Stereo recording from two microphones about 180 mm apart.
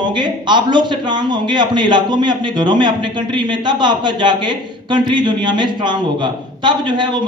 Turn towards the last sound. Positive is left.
turn(degrees=-25)  # may be behind; listen again after turning